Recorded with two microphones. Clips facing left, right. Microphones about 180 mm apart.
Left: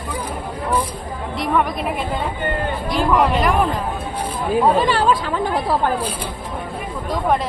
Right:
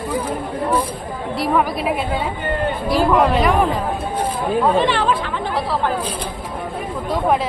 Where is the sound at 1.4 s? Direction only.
Centre (ahead or behind).